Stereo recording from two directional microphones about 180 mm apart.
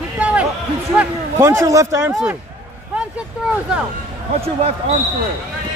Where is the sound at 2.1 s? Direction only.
Centre (ahead or behind).